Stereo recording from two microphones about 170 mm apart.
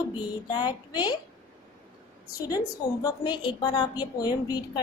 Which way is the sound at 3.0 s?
25° left (ahead or behind).